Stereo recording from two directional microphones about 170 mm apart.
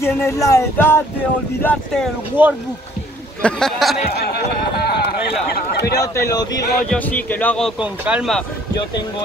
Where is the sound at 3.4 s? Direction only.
Centre (ahead or behind).